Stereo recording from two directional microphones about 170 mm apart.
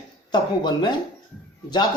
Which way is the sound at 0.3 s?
25° left (ahead or behind).